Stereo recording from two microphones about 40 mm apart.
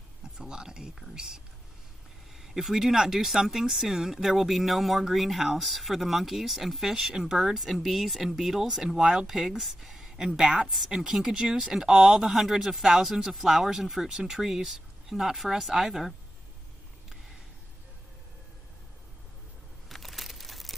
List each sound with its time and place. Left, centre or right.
0.4 s speech: centre
9.3 s speech: centre
11.3 s speech: centre
19.9 s crumpling: centre